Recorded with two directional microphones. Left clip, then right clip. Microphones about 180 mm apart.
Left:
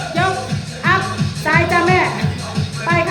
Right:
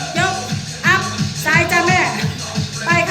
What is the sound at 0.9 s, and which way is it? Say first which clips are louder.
Music: right 1 dB; 20° left (ahead or behind).